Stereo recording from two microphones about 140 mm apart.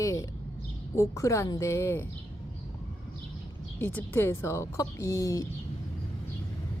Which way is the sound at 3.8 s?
15° left (ahead or behind).